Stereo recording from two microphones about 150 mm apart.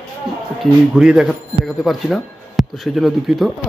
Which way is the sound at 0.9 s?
5° right (ahead or behind).